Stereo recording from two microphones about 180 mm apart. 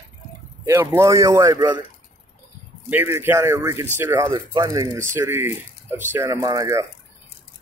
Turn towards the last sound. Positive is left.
turn(degrees=-20)  # may be behind; listen again after turning